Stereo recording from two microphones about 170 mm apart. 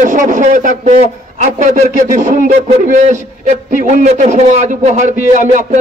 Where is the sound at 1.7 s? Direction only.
45° right (ahead or behind).